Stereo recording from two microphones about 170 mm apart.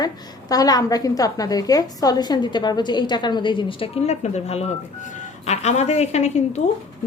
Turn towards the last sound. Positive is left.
turn(degrees=40)  # may be behind; listen again after turning